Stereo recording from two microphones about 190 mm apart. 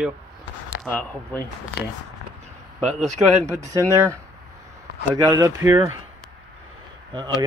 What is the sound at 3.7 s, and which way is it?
Speech, 15° right (ahead or behind).